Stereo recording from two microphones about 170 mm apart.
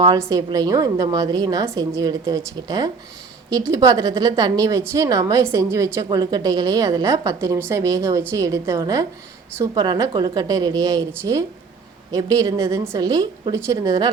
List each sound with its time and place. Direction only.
0.0 s a woman's voice: 20° right (ahead or behind)